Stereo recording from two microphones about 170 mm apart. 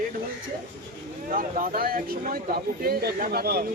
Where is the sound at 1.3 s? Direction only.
55° right (ahead or behind).